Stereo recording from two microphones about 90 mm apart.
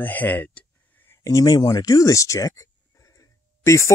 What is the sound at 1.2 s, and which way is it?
Speech, 40° left (ahead or behind).